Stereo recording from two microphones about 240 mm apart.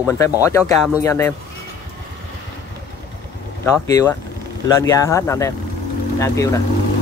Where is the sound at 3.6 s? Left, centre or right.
Centre.